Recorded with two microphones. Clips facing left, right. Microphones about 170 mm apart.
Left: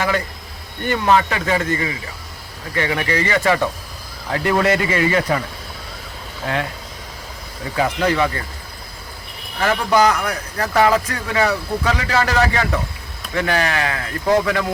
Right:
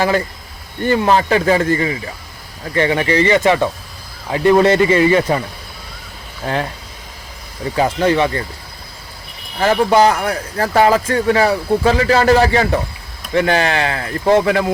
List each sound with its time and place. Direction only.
0.9 s speech: 35° right (ahead or behind)
7.8 s speech: 25° right (ahead or behind)
9.6 s speech: 30° right (ahead or behind)